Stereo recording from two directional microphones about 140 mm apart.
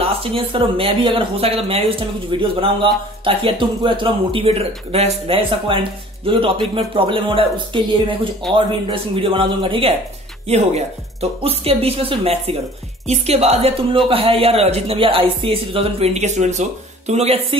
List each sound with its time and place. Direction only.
0.0 s speech: 45° right (ahead or behind)